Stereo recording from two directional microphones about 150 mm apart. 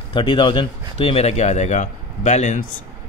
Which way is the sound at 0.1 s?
35° left (ahead or behind).